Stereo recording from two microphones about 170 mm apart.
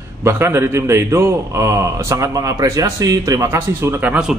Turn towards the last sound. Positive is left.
turn(degrees=-10)  # may be behind; listen again after turning